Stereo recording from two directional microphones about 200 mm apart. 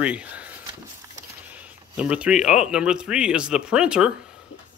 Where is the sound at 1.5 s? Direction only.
5° right (ahead or behind).